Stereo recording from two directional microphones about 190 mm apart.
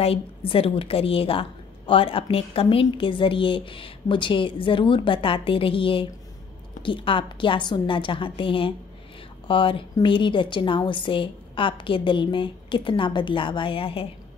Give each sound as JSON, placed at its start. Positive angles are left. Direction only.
{"t": 0.0, "sound": "a woman's voice", "side_deg": 30}